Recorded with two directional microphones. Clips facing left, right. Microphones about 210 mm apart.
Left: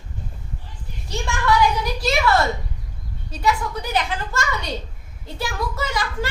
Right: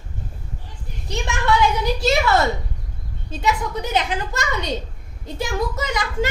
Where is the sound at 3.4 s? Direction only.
20° right (ahead or behind).